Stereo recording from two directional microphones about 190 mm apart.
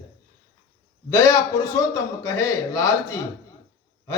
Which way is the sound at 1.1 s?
15° left (ahead or behind).